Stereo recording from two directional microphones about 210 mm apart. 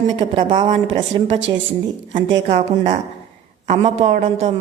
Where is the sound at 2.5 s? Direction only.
35° right (ahead or behind).